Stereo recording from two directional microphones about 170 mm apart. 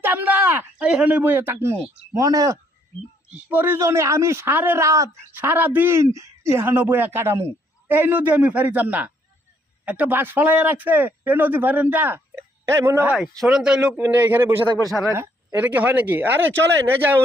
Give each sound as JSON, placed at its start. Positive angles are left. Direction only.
{"t": 0.0, "sound": "speech", "side_deg": -10}
{"t": 3.2, "sound": "a man's voice", "side_deg": -10}
{"t": 13.4, "sound": "a man's voice", "side_deg": -5}
{"t": 14.7, "sound": "a man's voice", "side_deg": -20}